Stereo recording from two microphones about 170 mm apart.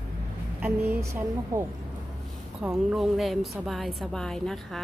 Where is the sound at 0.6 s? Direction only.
10° right (ahead or behind).